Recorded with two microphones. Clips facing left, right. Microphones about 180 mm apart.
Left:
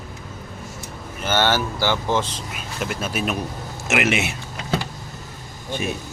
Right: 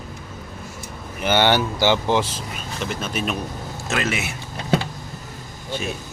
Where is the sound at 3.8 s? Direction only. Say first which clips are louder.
Left 4 dB; 20° left (ahead or behind).